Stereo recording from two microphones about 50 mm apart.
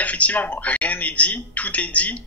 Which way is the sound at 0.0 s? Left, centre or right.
Left.